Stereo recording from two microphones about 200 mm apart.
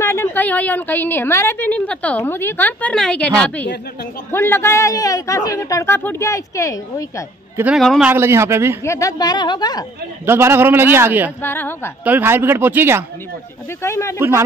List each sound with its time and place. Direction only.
0.0 s a woman's voice: 10° left (ahead or behind)
4.3 s a woman's voice: 10° left (ahead or behind)
7.5 s a man's voice: 5° right (ahead or behind)
8.1 s a man's voice: 10° right (ahead or behind)
8.8 s a woman's voice: 15° left (ahead or behind)
10.2 s a man's voice: 10° right (ahead or behind)
11.4 s a woman's voice: 10° left (ahead or behind)
12.0 s a man's voice: 10° right (ahead or behind)
13.8 s a woman's voice: 15° left (ahead or behind)